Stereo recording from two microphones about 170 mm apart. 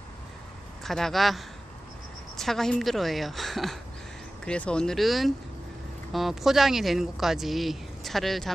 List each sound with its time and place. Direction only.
0.8 s speech: centre (ahead or behind)